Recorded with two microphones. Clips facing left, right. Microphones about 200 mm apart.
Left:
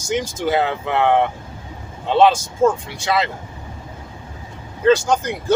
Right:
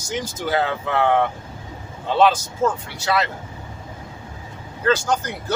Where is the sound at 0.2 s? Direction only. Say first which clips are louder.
Left 1 dB; 15° left (ahead or behind).